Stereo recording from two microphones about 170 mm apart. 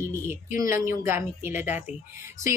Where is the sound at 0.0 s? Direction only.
15° right (ahead or behind).